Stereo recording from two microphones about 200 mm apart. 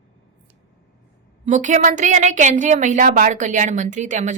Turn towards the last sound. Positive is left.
turn(degrees=-40)  # may be behind; listen again after turning